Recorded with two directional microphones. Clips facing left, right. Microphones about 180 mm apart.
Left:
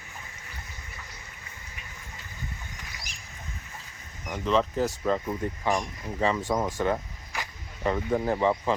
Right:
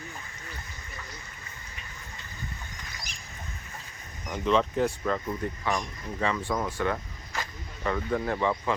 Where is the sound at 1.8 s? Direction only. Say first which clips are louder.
Even; 10° left (ahead or behind).